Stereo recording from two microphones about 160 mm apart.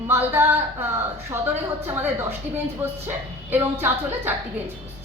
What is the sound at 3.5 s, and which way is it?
Speech, 10° right (ahead or behind).